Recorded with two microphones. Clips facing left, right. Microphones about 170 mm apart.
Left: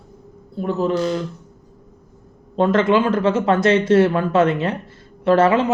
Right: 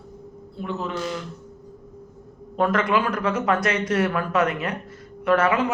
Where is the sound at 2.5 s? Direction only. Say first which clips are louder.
Left 5 dB; 25° left (ahead or behind).